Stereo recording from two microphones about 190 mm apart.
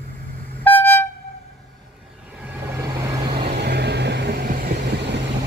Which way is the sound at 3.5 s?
60° right (ahead or behind).